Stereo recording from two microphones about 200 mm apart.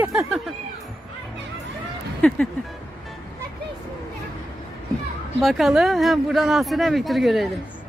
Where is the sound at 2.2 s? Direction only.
5° left (ahead or behind).